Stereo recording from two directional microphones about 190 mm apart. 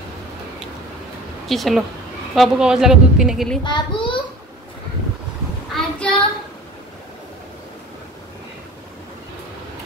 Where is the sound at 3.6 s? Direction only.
25° left (ahead or behind).